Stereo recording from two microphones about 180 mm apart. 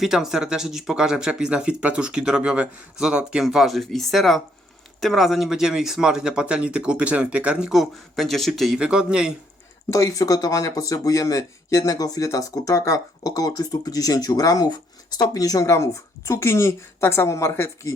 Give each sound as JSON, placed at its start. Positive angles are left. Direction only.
{"t": 0.0, "sound": "speech", "side_deg": 0}
{"t": 9.9, "sound": "speech", "side_deg": 20}